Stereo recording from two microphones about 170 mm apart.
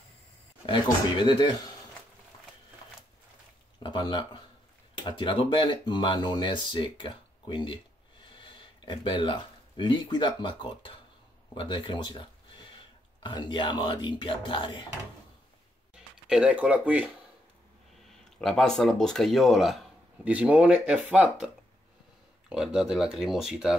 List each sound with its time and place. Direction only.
0.7 s speech: 25° left (ahead or behind)
3.8 s speech: 25° left (ahead or behind)
15.9 s speech: 5° right (ahead or behind)
18.4 s speech: 5° left (ahead or behind)
22.5 s speech: 5° right (ahead or behind)